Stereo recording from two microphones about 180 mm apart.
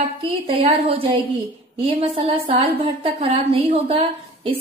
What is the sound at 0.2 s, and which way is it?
A woman's voice, 30° right (ahead or behind).